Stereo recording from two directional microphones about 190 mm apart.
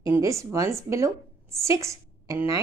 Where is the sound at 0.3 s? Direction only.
15° right (ahead or behind).